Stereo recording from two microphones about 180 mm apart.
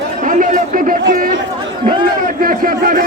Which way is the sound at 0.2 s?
45° right (ahead or behind).